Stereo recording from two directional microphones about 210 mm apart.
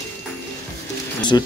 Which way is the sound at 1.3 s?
20° left (ahead or behind).